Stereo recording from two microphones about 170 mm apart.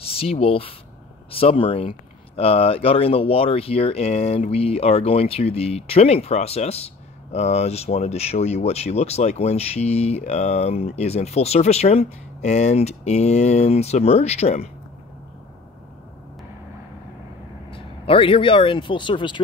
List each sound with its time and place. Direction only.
0.0 s speech: 35° left (ahead or behind)
17.6 s speech: 30° left (ahead or behind)